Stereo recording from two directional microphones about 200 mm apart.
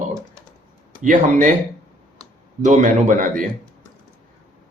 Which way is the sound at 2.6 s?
40° right (ahead or behind).